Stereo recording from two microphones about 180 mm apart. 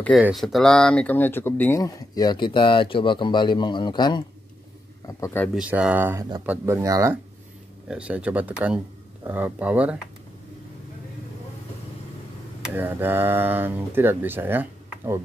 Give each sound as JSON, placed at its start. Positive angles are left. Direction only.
{"t": 0.2, "sound": "speech", "side_deg": 0}
{"t": 5.0, "sound": "a man's voice", "side_deg": 15}
{"t": 5.5, "sound": "speech", "side_deg": -5}
{"t": 7.9, "sound": "speech", "side_deg": -5}
{"t": 12.7, "sound": "speech", "side_deg": -10}